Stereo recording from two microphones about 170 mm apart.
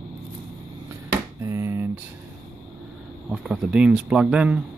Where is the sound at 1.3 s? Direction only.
15° right (ahead or behind).